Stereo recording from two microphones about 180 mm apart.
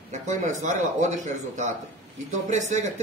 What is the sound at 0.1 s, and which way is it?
Speech, 40° right (ahead or behind).